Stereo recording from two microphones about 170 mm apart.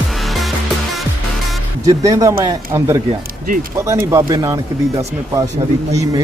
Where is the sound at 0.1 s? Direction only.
Centre (ahead or behind).